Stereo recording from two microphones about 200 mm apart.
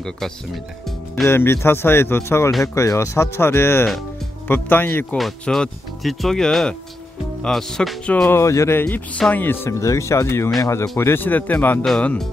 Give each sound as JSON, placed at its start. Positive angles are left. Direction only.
{"t": 0.2, "sound": "speech", "side_deg": 0}
{"t": 0.8, "sound": "music", "side_deg": 0}
{"t": 1.3, "sound": "speech", "side_deg": 10}